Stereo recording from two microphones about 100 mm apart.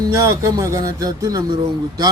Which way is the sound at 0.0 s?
30° right (ahead or behind).